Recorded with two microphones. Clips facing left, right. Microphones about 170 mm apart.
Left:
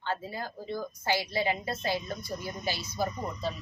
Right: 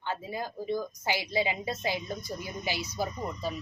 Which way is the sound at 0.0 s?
15° right (ahead or behind).